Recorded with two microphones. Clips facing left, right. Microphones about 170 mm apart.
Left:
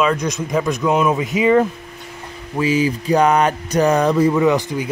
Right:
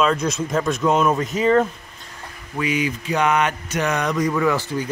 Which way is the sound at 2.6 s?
30° left (ahead or behind).